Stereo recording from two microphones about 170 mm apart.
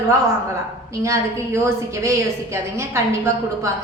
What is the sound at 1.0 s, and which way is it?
A woman's voice, 15° right (ahead or behind).